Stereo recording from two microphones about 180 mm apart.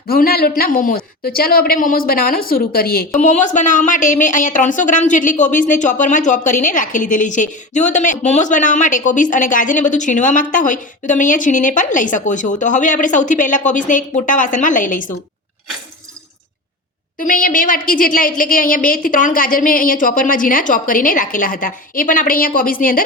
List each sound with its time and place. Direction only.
0.1 s a woman's voice: 55° left (ahead or behind)
3.2 s a woman's voice: 40° left (ahead or behind)
17.2 s a woman's voice: 50° left (ahead or behind)